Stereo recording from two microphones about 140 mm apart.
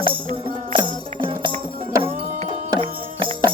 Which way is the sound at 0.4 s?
35° right (ahead or behind).